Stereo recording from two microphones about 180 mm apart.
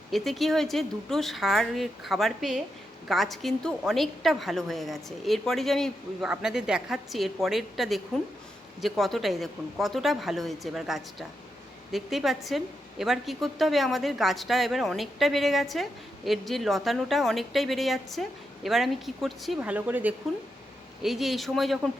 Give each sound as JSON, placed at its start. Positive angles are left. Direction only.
{"t": 0.1, "sound": "a woman's voice", "side_deg": 0}